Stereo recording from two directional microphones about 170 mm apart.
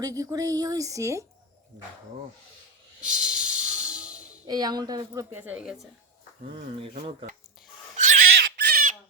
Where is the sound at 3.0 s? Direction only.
5° right (ahead or behind).